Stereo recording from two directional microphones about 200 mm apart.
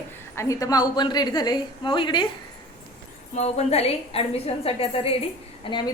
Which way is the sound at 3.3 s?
35° left (ahead or behind).